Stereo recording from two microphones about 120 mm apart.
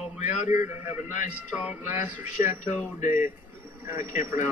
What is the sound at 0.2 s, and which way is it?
A man's voice, 75° left (ahead or behind).